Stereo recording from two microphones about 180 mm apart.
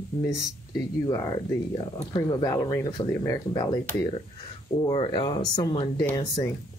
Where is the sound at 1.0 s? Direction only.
20° left (ahead or behind).